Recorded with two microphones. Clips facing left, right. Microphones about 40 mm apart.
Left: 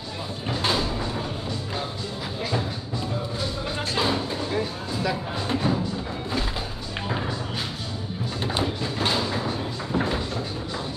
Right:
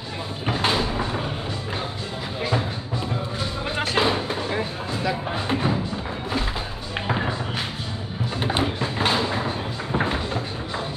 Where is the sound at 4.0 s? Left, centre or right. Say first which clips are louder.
Right 1 dB; right.